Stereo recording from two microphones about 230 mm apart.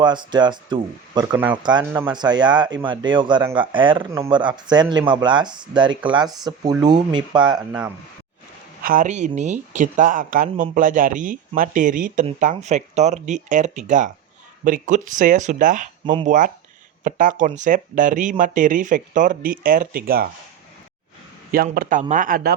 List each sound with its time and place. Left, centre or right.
0.0 s speech: centre
7.4 s speech: centre
8.8 s speech: right
21.5 s speech: right